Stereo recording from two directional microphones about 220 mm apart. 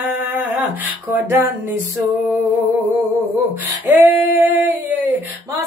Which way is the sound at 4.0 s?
10° right (ahead or behind).